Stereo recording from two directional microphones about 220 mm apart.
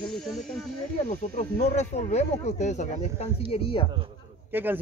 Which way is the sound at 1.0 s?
30° left (ahead or behind).